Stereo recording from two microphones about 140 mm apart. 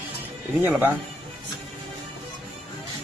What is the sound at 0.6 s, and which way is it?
Speech, 15° right (ahead or behind).